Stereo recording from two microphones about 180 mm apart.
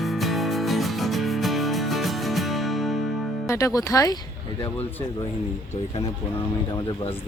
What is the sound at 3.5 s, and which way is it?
Speech, 15° left (ahead or behind).